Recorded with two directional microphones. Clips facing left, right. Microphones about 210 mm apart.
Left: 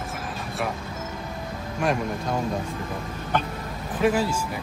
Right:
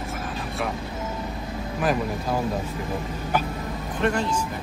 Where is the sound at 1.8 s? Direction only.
Centre (ahead or behind).